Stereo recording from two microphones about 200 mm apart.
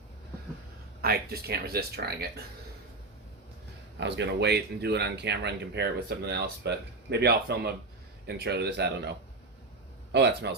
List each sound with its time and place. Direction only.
1.0 s speech: 50° right (ahead or behind)
4.0 s speech: 60° right (ahead or behind)